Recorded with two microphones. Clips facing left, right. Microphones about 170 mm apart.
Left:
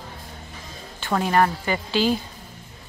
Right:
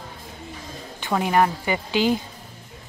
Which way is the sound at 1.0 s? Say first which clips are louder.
Even; 15° right (ahead or behind).